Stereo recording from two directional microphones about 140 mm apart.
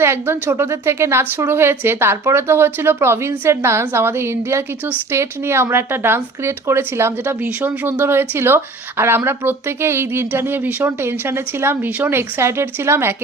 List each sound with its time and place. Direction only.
0.0 s a woman's voice: 15° right (ahead or behind)